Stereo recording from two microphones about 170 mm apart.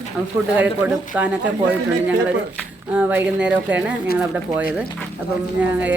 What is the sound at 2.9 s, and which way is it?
A woman's voice, 10° right (ahead or behind).